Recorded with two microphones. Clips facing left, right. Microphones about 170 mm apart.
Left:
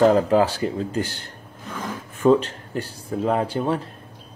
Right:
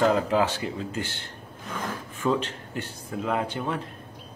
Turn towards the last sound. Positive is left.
turn(degrees=35)  # may be behind; listen again after turning